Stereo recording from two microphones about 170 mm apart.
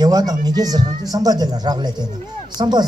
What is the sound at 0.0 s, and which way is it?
Speech, 20° right (ahead or behind).